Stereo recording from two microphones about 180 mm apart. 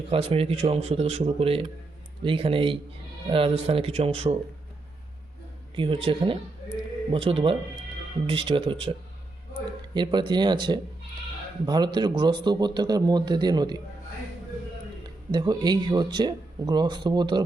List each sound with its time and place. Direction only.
0.1 s speech: 30° right (ahead or behind)
5.7 s speech: 30° right (ahead or behind)
15.0 s speech: 25° right (ahead or behind)